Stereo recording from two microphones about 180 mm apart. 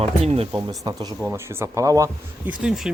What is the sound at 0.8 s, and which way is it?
Speech, 20° right (ahead or behind).